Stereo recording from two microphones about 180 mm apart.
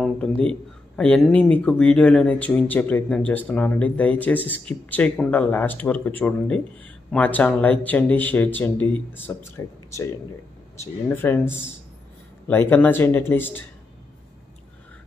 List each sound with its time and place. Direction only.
0.0 s speech: 5° left (ahead or behind)
10.8 s speech: 10° left (ahead or behind)